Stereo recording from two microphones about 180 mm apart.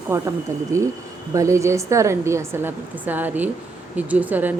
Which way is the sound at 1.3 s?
15° right (ahead or behind).